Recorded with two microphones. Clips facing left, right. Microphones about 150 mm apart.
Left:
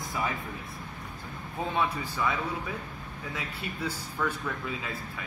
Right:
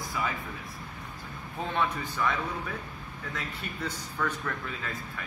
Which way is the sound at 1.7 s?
10° left (ahead or behind).